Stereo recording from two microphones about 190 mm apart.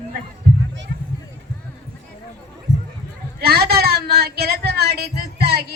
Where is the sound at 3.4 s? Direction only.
55° right (ahead or behind).